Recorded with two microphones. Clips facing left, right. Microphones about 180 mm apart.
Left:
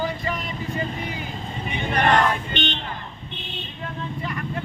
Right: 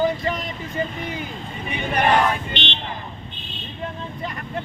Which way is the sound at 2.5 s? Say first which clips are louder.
Left 3 dB; 45° left (ahead or behind).